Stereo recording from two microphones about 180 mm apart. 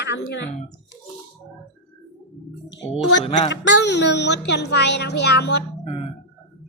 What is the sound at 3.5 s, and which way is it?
Speech, 80° left.